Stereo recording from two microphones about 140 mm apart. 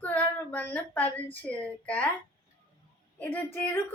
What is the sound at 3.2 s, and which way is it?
Speech, 15° left (ahead or behind).